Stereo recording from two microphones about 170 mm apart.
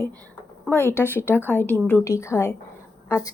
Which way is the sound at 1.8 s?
10° left (ahead or behind).